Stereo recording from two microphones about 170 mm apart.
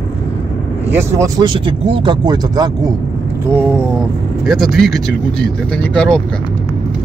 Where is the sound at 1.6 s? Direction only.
30° right (ahead or behind).